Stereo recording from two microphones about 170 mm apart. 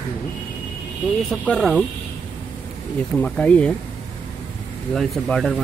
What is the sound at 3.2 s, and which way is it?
Speech, 5° left (ahead or behind).